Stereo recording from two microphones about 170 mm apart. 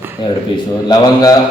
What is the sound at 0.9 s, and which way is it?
Speech, 20° left (ahead or behind).